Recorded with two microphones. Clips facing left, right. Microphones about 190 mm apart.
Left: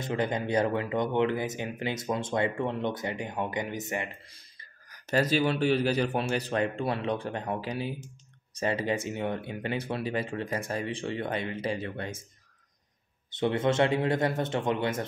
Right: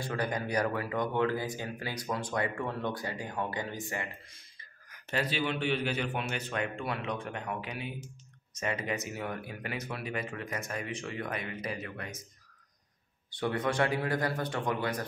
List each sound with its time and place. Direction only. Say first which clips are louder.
0.0 s a man's voice: left 4 dB; 20° left (ahead or behind)
4.8 s a man's voice: left 6 dB; 40° left (ahead or behind)
13.3 s a man's voice: left 5 dB; 25° left (ahead or behind)